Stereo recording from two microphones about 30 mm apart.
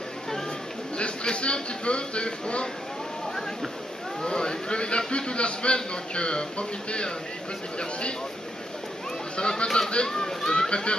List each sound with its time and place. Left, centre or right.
1.2 s a man's voice: left
4.2 s a man's voice: left
9.4 s a man's voice: left
10.0 s a child's voice: left
10.7 s a man's voice: left